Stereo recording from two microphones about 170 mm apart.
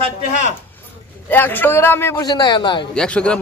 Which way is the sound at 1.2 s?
10° left (ahead or behind).